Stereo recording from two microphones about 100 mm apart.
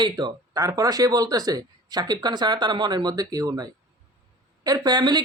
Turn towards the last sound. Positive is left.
turn(degrees=-45)  # may be behind; listen again after turning